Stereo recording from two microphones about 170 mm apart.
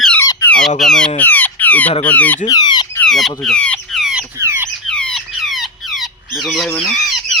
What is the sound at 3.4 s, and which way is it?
Squawk, 5° left (ahead or behind).